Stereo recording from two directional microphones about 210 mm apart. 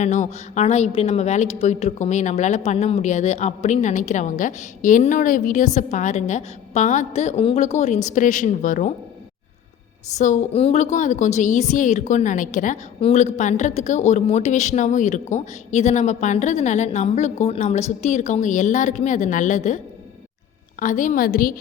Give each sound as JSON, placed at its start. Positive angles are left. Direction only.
{"t": 0.0, "sound": "a woman's voice", "side_deg": 35}
{"t": 10.2, "sound": "a woman's voice", "side_deg": 35}